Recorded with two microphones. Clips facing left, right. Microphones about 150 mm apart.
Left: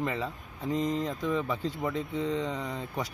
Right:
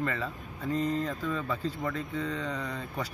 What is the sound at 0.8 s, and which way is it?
Speech, 90° left.